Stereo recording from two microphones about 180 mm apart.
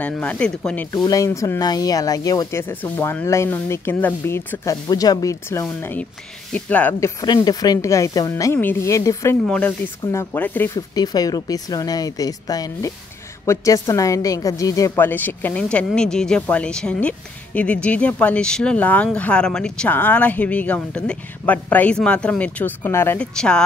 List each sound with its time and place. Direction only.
0.0 s speech: 5° left (ahead or behind)
0.9 s speech: 20° left (ahead or behind)
10.7 s speech: 20° left (ahead or behind); by 23.6 s 5° left (ahead or behind)